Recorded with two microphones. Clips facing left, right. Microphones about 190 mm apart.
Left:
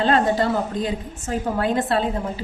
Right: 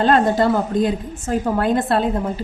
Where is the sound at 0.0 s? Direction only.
50° right (ahead or behind).